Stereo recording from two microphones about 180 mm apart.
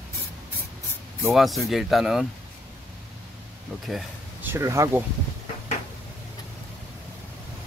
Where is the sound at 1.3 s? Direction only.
Centre (ahead or behind).